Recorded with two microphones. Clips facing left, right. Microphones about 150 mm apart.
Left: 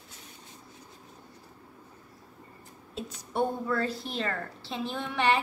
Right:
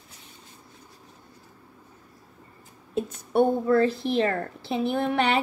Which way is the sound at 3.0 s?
55° right (ahead or behind).